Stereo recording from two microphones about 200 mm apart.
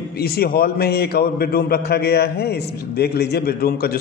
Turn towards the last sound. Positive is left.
turn(degrees=50)  # may be behind; listen again after turning